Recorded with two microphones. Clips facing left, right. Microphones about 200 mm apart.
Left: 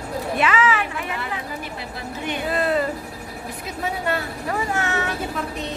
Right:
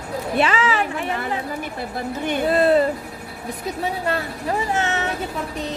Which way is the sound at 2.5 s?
30° right (ahead or behind).